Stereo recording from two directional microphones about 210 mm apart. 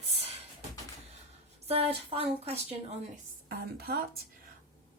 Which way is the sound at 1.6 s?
25° right (ahead or behind).